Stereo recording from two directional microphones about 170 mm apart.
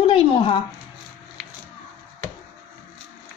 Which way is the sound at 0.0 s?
30° left (ahead or behind).